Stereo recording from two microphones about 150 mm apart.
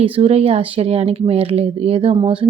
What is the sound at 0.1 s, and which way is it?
Speech, 40° right (ahead or behind).